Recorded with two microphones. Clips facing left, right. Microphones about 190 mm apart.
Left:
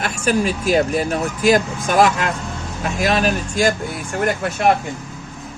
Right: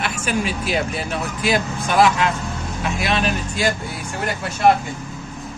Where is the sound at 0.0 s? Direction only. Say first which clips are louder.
Left 4 dB; 40° left (ahead or behind).